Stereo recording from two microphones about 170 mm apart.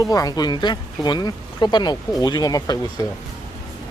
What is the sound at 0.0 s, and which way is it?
Speech, 20° left (ahead or behind).